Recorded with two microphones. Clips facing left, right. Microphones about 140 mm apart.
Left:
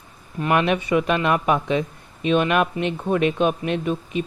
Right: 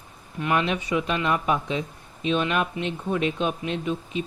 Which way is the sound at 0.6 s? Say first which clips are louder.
Left 7 dB; 60° left (ahead or behind).